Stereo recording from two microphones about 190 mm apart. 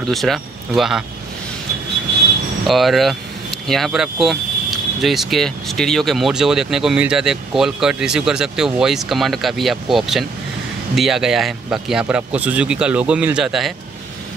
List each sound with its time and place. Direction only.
0.1 s speech: centre (ahead or behind)
2.6 s speech: centre (ahead or behind)